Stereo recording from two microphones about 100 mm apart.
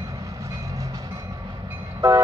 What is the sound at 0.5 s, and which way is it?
Vehicle, 35° right (ahead or behind).